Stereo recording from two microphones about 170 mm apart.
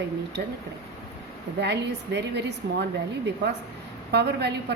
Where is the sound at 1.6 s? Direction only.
85° right.